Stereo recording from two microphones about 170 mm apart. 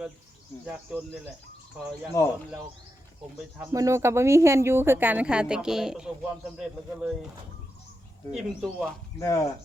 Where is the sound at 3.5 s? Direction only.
15° right (ahead or behind).